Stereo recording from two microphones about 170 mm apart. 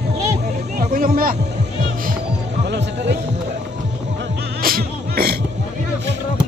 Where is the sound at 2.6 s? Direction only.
90° right; by 5.4 s 65° right (ahead or behind).